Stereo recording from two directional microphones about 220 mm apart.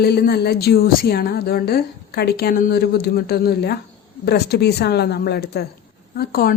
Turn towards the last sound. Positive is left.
turn(degrees=45)  # may be behind; listen again after turning